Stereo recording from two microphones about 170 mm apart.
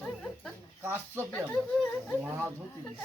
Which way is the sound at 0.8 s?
15° right (ahead or behind).